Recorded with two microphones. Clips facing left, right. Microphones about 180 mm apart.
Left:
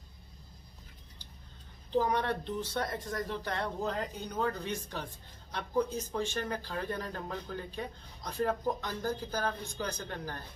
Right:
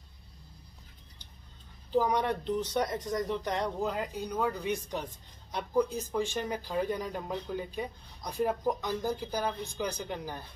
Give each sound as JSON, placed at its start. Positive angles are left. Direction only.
{"t": 2.0, "sound": "speech", "side_deg": -15}